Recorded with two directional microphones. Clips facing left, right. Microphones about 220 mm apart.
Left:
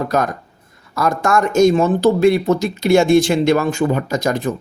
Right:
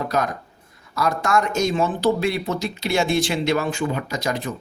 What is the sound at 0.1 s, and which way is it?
Speech, 50° left (ahead or behind).